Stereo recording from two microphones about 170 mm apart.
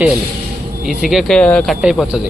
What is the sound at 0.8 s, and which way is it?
Speech, centre (ahead or behind).